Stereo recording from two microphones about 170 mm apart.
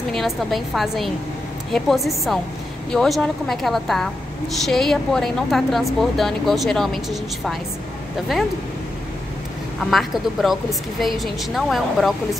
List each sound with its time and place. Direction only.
0.1 s a woman's voice: centre (ahead or behind)
9.8 s a woman's voice: centre (ahead or behind)